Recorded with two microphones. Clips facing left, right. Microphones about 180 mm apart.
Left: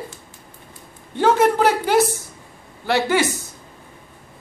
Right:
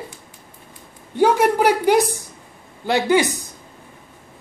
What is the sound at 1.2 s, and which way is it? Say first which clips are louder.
A woman's voice: even; 10° right (ahead or behind).